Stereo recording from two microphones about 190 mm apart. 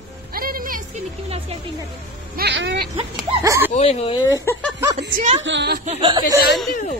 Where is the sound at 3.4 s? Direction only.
15° right (ahead or behind).